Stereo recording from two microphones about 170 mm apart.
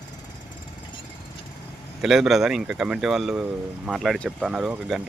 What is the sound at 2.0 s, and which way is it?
Speech, centre (ahead or behind).